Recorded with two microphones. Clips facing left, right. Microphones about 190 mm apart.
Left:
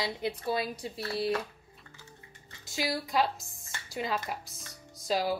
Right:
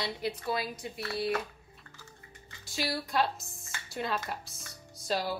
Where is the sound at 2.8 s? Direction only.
15° left (ahead or behind).